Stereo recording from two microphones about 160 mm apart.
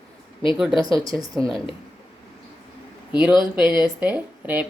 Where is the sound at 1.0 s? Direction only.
20° right (ahead or behind).